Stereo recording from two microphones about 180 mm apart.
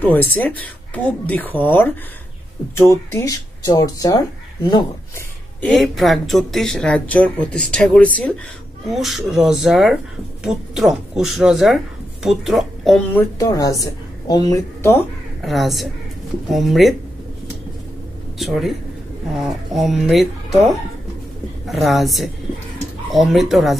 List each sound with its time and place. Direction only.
0.0 s a woman's voice: 10° left (ahead or behind)
2.9 s speech: 15° left (ahead or behind)
5.6 s speech: centre (ahead or behind)
13.4 s a woman's voice: 20° left (ahead or behind)
15.4 s speech: centre (ahead or behind)
18.4 s speech: centre (ahead or behind)
21.6 s speech: centre (ahead or behind)